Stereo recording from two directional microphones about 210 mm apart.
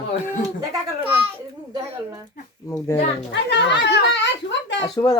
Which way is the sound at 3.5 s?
55° left (ahead or behind).